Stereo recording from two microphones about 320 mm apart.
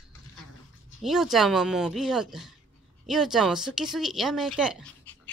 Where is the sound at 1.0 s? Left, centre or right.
Centre.